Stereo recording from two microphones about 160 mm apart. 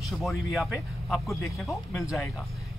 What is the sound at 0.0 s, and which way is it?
Speech, centre (ahead or behind).